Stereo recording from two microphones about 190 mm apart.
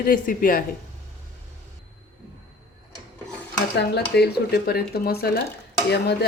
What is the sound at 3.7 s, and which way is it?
Speech, 60° left (ahead or behind).